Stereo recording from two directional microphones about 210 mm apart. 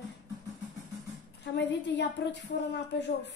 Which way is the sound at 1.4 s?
55° left (ahead or behind).